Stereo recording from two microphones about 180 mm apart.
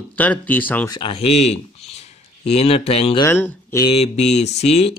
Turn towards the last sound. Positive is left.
turn(degrees=35)  # may be behind; listen again after turning